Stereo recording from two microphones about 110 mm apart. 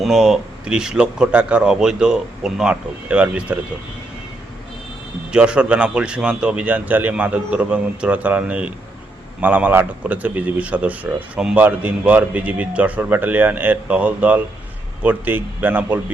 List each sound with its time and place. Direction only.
0.0 s a man's voice: 5° right (ahead or behind)
5.3 s a man's voice: 10° right (ahead or behind)